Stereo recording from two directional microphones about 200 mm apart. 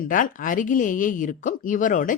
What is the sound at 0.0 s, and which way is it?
Speech, 40° left (ahead or behind).